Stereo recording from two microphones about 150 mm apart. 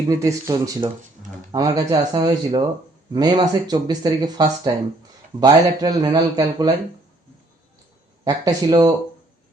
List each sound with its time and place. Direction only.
0.1 s speech: 20° right (ahead or behind)
8.2 s speech: 25° right (ahead or behind)